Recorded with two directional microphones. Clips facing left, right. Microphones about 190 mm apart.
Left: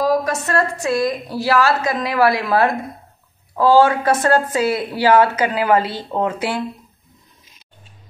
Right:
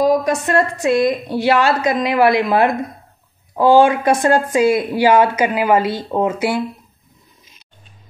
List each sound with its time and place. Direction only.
0.0 s a woman's voice: 20° right (ahead or behind)